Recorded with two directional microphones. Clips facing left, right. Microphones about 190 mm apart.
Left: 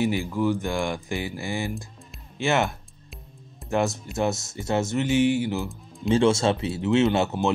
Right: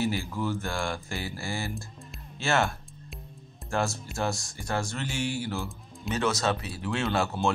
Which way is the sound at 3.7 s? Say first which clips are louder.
Left 5 dB; 20° left (ahead or behind).